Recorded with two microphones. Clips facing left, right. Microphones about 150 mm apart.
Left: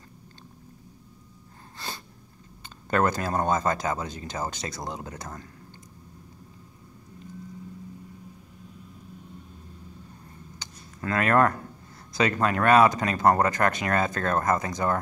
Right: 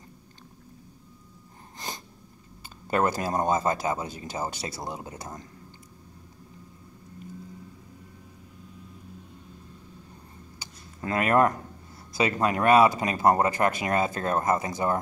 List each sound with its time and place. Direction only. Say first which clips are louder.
2.9 s speech: left 1 dB; 15° right (ahead or behind)
11.0 s speech: even; 20° right (ahead or behind)